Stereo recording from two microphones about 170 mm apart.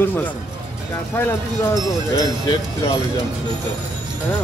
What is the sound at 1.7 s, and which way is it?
Speech, 20° left (ahead or behind).